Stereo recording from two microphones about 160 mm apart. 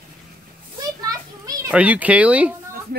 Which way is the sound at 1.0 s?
25° right (ahead or behind).